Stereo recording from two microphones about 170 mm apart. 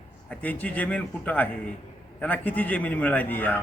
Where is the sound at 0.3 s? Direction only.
10° left (ahead or behind).